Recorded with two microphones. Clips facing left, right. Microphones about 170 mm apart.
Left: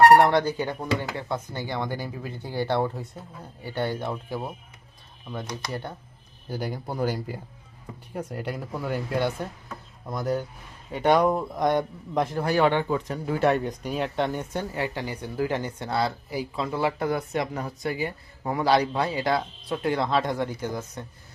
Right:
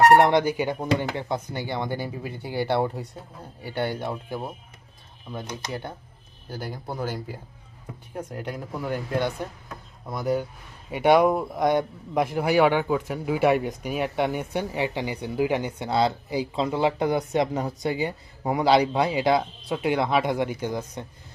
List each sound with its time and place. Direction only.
0.2 s a man's voice: 15° right (ahead or behind)
4.3 s a man's voice: centre (ahead or behind)
6.5 s a man's voice: 10° left (ahead or behind); by 21.0 s 20° right (ahead or behind)